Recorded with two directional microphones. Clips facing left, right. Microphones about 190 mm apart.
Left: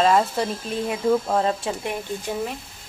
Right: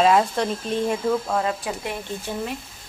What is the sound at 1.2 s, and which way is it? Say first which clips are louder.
Speech: left 2 dB; 25° left (ahead or behind).